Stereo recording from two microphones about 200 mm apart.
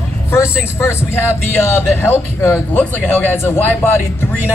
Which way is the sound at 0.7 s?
15° left (ahead or behind).